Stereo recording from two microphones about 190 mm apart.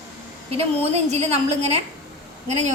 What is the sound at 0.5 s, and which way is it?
A woman's voice, 35° right (ahead or behind).